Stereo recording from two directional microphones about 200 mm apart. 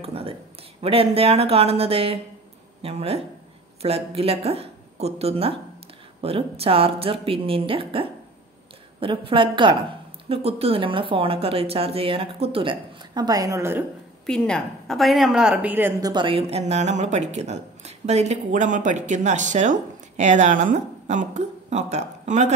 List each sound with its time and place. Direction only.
0.0 s speech: 30° right (ahead or behind); by 13.8 s 10° right (ahead or behind)
14.2 s a woman's voice: 5° left (ahead or behind); by 22.5 s 35° right (ahead or behind)